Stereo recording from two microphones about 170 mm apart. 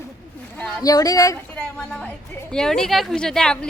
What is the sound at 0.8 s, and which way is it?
Speech, 20° left (ahead or behind).